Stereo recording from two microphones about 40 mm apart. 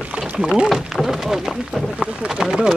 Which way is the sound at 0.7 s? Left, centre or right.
Centre.